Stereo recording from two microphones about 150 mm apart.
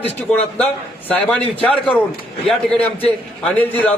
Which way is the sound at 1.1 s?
10° left (ahead or behind).